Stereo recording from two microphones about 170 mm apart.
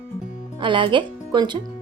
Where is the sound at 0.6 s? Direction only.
30° right (ahead or behind).